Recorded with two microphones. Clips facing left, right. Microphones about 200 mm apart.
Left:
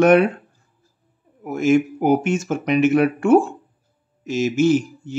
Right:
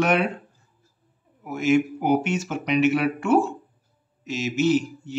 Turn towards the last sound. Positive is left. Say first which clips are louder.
# left 3 dB
turn(degrees=50)  # may be behind; listen again after turning